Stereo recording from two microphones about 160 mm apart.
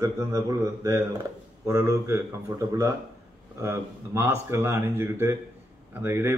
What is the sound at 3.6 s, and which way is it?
A man's voice, 15° right (ahead or behind).